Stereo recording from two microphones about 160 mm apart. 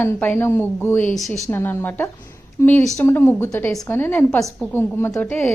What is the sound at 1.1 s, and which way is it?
Speech, centre (ahead or behind).